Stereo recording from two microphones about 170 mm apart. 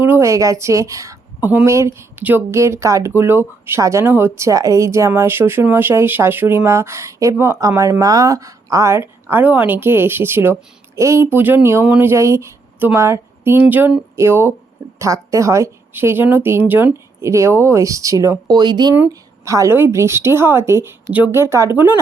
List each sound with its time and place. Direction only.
0.0 s a woman's voice: 15° right (ahead or behind)